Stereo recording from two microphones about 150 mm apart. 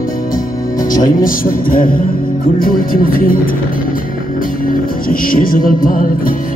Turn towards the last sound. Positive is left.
turn(degrees=70)  # may be behind; listen again after turning